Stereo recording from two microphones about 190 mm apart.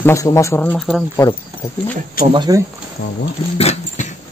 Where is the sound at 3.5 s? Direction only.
35° left (ahead or behind).